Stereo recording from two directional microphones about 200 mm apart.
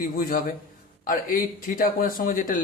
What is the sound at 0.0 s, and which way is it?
A man's voice, 45° left (ahead or behind).